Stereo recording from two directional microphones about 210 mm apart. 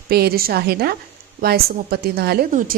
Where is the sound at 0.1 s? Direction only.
50° right (ahead or behind).